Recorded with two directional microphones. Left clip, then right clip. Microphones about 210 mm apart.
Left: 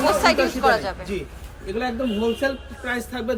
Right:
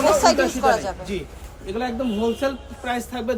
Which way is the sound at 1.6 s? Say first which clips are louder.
Even; centre (ahead or behind).